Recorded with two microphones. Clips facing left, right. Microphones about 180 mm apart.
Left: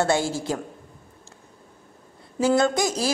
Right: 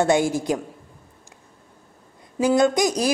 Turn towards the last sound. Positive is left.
turn(degrees=-15)  # may be behind; listen again after turning